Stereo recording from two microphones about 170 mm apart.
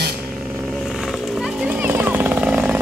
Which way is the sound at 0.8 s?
Centre (ahead or behind).